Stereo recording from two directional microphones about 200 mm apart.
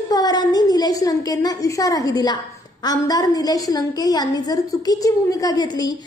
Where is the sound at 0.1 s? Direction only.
20° left (ahead or behind).